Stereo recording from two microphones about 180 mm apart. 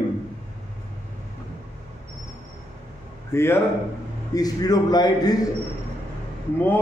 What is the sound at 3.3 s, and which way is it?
A man's voice, 15° left (ahead or behind).